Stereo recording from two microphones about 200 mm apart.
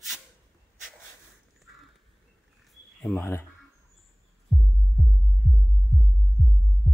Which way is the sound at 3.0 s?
10° left (ahead or behind).